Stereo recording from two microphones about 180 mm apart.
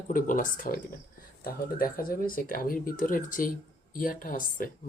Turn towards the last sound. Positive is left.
turn(degrees=50)  # may be behind; listen again after turning